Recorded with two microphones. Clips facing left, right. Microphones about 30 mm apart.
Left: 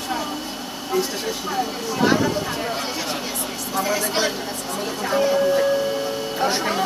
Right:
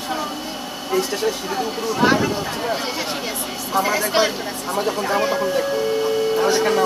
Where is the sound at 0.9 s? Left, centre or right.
Centre.